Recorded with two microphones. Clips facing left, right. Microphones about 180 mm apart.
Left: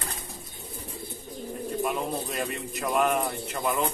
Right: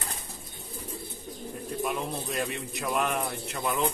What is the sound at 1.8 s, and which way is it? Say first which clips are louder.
Speech: left 2 dB; centre (ahead or behind).